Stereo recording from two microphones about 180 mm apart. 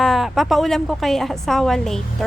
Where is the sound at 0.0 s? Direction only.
Centre (ahead or behind).